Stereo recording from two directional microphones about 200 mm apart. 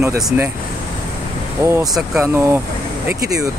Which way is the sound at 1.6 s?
5° right (ahead or behind).